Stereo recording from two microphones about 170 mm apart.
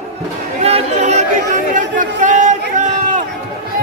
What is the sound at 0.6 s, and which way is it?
Chatter, 40° right (ahead or behind).